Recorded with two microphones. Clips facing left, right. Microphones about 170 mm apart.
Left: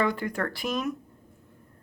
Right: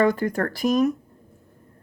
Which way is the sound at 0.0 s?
45° right (ahead or behind).